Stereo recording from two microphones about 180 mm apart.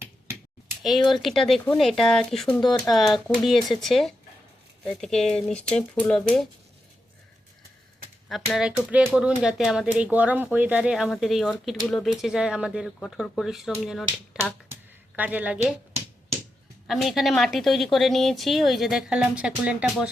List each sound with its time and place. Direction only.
1.1 s speech: centre (ahead or behind)
2.5 s speech: 25° left (ahead or behind)
2.9 s speech: centre (ahead or behind)
8.3 s speech: centre (ahead or behind)
14.7 s a sound: 10° right (ahead or behind)
16.8 s speech: centre (ahead or behind)